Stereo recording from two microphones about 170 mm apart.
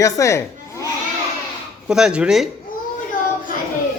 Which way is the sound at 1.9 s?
5° right (ahead or behind).